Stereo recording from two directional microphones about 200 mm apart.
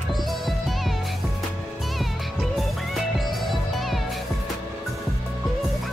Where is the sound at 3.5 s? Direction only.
Centre (ahead or behind).